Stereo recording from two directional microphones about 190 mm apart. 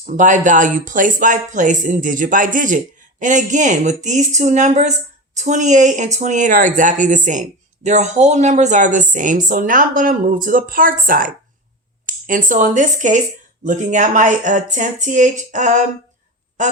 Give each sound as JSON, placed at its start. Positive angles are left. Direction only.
{"t": 0.0, "sound": "a woman's voice", "side_deg": -40}